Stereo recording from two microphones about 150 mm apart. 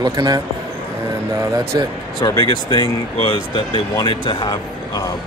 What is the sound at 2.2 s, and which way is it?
Speech, 25° left (ahead or behind).